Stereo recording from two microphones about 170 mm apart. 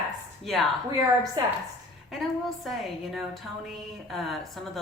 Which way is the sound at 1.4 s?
25° right (ahead or behind).